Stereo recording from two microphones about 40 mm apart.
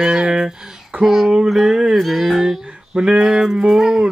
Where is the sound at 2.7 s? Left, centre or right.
Right.